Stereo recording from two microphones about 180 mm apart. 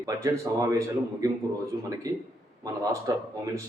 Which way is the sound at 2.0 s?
20° right (ahead or behind).